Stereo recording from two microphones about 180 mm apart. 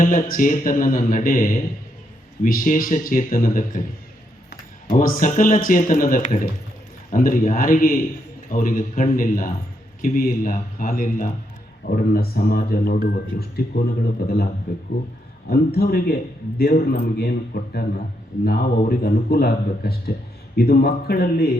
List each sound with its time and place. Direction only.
0.0 s speech: 45° left (ahead or behind)
4.9 s speech: 45° left (ahead or behind)